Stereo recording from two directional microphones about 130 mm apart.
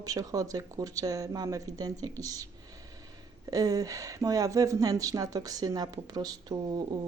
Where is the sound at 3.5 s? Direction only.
30° right (ahead or behind).